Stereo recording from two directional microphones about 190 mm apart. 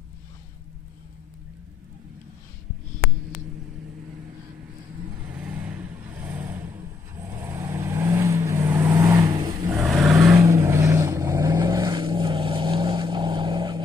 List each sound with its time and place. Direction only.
5.2 s vehicle: 5° right (ahead or behind)
9.8 s vehicle: centre (ahead or behind)
10.1 s vehicle: 15° right (ahead or behind)